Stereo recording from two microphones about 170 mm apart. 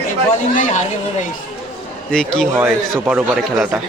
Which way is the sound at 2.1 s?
5° left (ahead or behind).